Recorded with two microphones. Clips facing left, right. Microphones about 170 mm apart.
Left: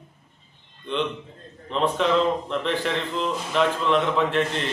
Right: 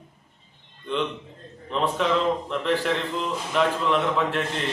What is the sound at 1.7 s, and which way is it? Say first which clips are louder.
A man's voice: left 2 dB; 5° right (ahead or behind).